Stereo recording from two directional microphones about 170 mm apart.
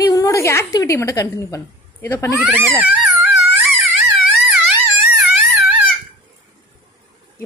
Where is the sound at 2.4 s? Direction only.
10° right (ahead or behind).